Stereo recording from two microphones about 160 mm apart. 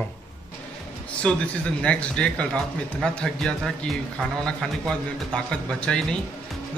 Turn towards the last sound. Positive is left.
turn(degrees=5)  # may be behind; listen again after turning